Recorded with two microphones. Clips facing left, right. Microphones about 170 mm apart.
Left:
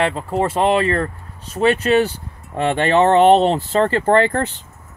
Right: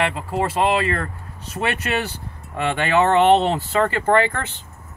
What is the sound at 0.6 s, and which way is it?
Speech, 35° left (ahead or behind).